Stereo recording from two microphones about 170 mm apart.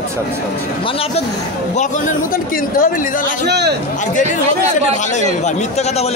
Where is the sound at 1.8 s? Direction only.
50° left (ahead or behind).